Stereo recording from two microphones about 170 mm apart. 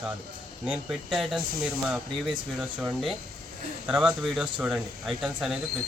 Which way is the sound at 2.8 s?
5° right (ahead or behind).